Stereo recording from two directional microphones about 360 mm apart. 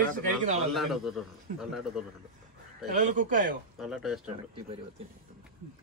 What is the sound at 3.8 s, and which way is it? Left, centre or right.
Speech, centre.